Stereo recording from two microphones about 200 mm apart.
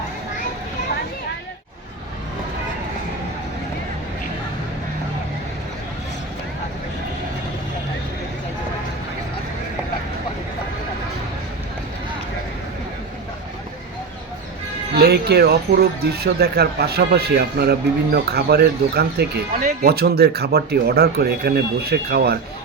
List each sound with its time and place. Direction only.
14.9 s speech: 55° right (ahead or behind)